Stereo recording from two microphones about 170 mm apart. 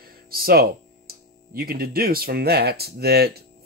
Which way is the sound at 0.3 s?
60° right (ahead or behind).